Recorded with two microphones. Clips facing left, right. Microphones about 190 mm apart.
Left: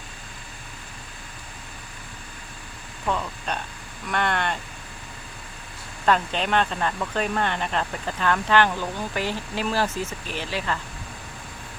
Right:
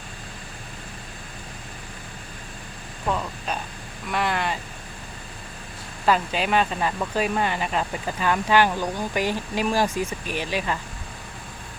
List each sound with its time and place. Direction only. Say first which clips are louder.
3.1 s speech: even; 5° right (ahead or behind)
6.1 s speech: right 1 dB; 5° right (ahead or behind)